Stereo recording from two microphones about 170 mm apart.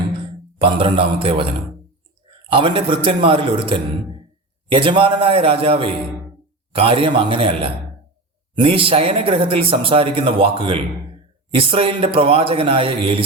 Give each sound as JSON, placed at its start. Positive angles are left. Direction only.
{"t": 0.6, "sound": "speech", "side_deg": -30}
{"t": 2.5, "sound": "a man's voice", "side_deg": -30}